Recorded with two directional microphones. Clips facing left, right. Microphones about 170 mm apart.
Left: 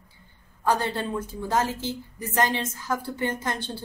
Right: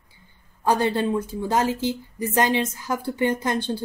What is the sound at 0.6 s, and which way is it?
A woman's voice, 15° right (ahead or behind).